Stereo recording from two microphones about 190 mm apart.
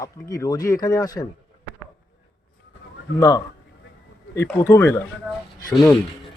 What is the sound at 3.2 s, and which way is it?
Speech, 20° left (ahead or behind).